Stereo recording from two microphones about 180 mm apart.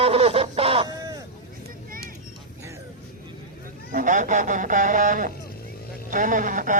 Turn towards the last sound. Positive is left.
turn(degrees=-45)  # may be behind; listen again after turning